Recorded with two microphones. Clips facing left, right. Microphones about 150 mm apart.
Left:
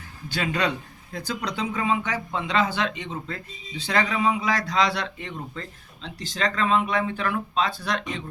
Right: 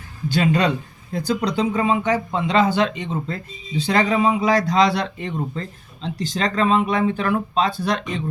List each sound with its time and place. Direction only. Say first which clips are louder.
0.3 s speech: right 7 dB; 30° right (ahead or behind)